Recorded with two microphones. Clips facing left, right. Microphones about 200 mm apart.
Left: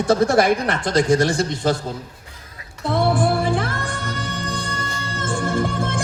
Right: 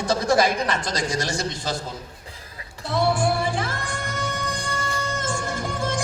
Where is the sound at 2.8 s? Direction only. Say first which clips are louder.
Left 3 dB; 55° left (ahead or behind).